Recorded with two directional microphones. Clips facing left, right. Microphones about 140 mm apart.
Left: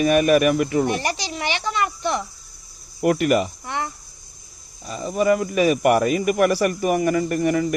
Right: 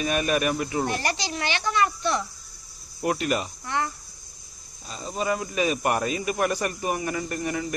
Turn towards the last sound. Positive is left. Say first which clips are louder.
# left 9 dB
turn(degrees=65)  # may be behind; listen again after turning